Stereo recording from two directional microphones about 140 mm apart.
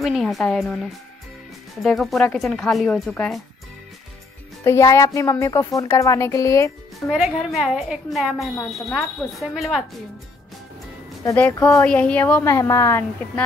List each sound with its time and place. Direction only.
0.0 s speech: centre (ahead or behind)
4.6 s speech: 20° left (ahead or behind)
7.1 s speech: centre (ahead or behind)
11.8 s a woman's voice: 10° left (ahead or behind)